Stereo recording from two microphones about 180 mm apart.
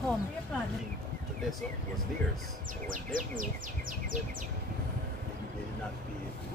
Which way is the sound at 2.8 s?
50° right (ahead or behind).